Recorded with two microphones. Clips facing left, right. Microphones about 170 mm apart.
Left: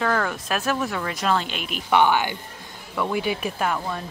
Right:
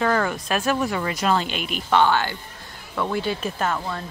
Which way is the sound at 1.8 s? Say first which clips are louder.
Even; 15° left (ahead or behind).